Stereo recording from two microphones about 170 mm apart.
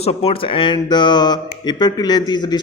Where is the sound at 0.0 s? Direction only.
35° left (ahead or behind).